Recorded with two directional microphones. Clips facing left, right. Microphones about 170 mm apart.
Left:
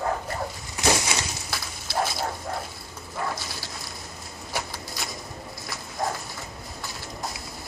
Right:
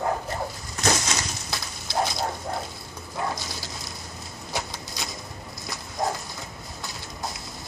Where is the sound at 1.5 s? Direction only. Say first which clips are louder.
Right 1 dB; 20° right (ahead or behind).